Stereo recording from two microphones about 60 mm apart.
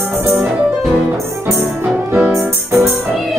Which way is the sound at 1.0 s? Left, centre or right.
Right.